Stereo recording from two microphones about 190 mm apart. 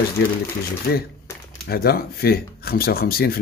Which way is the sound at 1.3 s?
15° left (ahead or behind).